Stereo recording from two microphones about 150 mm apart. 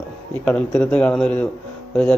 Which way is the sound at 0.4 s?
10° left (ahead or behind).